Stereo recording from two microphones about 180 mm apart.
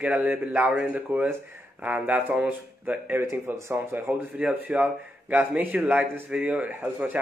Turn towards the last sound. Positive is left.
turn(degrees=-10)  # may be behind; listen again after turning